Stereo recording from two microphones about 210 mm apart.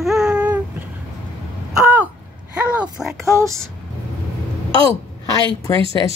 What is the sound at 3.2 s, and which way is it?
Speech, 15° right (ahead or behind).